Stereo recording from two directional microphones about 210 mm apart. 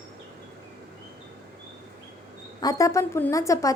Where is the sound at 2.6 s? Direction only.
15° left (ahead or behind).